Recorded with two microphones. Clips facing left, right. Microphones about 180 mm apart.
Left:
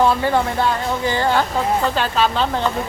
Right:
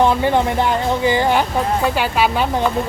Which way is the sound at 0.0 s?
20° right (ahead or behind).